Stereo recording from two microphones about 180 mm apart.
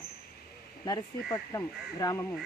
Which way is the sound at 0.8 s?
20° left (ahead or behind).